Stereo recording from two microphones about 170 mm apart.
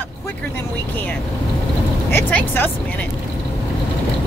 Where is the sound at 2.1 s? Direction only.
10° left (ahead or behind).